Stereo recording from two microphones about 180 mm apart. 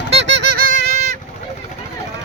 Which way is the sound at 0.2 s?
75° right (ahead or behind).